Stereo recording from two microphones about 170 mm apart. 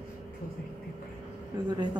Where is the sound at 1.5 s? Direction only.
25° right (ahead or behind).